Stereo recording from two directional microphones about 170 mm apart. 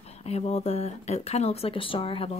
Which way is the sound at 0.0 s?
35° left (ahead or behind).